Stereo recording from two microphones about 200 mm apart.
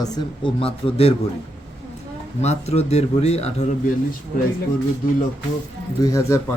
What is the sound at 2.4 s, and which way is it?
Speech, 30° left (ahead or behind).